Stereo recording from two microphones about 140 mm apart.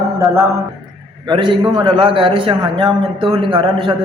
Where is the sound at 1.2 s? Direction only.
35° right (ahead or behind).